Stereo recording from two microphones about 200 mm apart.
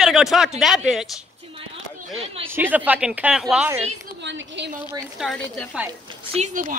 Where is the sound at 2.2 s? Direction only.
30° right (ahead or behind).